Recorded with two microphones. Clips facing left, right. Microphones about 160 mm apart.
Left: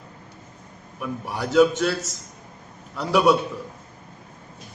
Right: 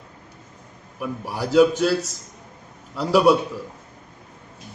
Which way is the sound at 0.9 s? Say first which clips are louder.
Right 1 dB; 5° right (ahead or behind).